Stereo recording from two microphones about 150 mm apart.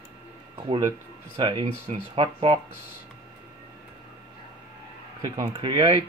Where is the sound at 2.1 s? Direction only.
35° right (ahead or behind).